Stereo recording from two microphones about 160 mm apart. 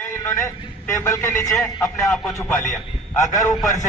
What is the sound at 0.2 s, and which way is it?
A man's voice, 20° left (ahead or behind).